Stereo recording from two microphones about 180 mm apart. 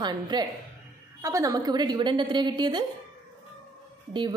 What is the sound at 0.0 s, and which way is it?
A woman's voice, 25° right (ahead or behind).